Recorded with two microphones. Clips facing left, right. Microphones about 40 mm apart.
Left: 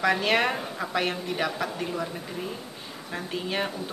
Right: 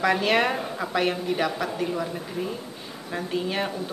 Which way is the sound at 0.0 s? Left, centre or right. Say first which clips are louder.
Right 2 dB; centre.